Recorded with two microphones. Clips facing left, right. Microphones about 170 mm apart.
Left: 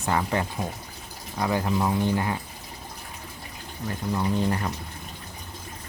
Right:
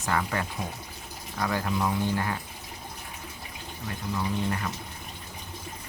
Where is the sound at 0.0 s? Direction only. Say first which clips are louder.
Left 3 dB; 25° left (ahead or behind).